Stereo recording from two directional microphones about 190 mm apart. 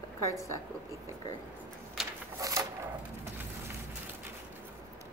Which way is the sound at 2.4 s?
15° right (ahead or behind).